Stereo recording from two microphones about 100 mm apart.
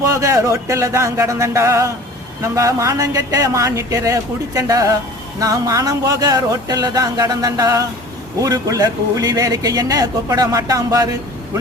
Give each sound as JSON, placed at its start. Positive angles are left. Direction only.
{"t": 0.0, "sound": "speech", "side_deg": -30}